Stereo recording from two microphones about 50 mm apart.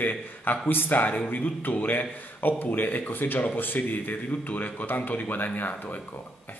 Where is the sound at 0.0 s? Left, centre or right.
Left.